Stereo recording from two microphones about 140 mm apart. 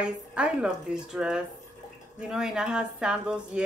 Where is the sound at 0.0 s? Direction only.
10° right (ahead or behind).